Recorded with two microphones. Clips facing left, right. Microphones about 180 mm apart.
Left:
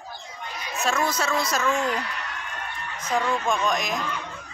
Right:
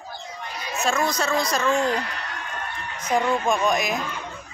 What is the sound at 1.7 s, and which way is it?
Speech, 35° right (ahead or behind).